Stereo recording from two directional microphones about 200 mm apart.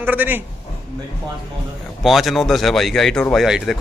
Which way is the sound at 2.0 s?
Centre (ahead or behind).